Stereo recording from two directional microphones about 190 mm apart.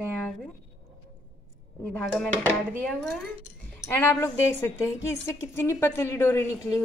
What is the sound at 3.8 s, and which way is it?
A woman's voice, 10° left (ahead or behind).